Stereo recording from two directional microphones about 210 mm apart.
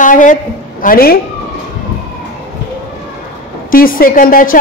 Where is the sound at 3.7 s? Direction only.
45° left (ahead or behind).